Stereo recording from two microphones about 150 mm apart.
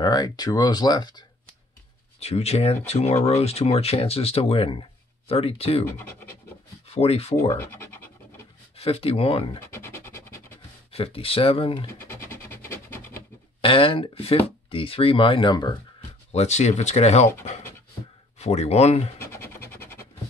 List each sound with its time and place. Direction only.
0.0 s speech: 25° left (ahead or behind)
2.1 s speech: 45° left (ahead or behind)
5.9 s speech: 15° left (ahead or behind)
6.9 s speech: 40° left (ahead or behind)
7.5 s speech: 15° left (ahead or behind)
8.7 s speech: 40° left (ahead or behind)
9.6 s a sound: 15° left (ahead or behind)
10.9 s speech: 40° left (ahead or behind)
11.9 s music: 15° left (ahead or behind)
13.6 s speech: 35° left (ahead or behind)
16.3 s speech: 45° left (ahead or behind)
18.4 s speech: 45° left (ahead or behind)
19.3 s scratch: 15° left (ahead or behind)